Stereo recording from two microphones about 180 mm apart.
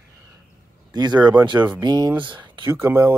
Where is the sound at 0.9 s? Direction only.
25° right (ahead or behind).